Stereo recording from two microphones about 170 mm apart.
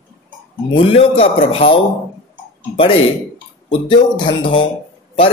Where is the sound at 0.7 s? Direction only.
35° left (ahead or behind).